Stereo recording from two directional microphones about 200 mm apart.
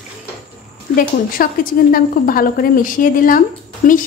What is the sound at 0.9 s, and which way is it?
A woman's voice, 45° left (ahead or behind).